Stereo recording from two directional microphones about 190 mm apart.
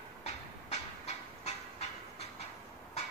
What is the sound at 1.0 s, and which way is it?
Train, 35° left (ahead or behind).